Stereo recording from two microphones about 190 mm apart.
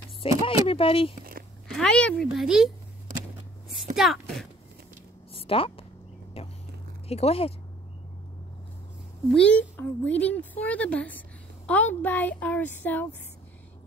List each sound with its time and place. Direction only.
0.2 s speech: 30° left (ahead or behind)
1.7 s speech: 5° left (ahead or behind)
3.9 s speech: centre (ahead or behind)
5.3 s a sound: 30° left (ahead or behind)
7.1 s speech: 30° left (ahead or behind)
9.3 s speech: 5° left (ahead or behind)